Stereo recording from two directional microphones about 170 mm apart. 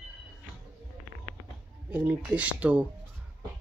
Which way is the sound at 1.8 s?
5° right (ahead or behind).